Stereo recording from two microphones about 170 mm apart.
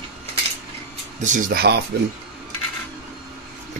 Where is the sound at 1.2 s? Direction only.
50° right (ahead or behind); by 1.8 s 65° right (ahead or behind).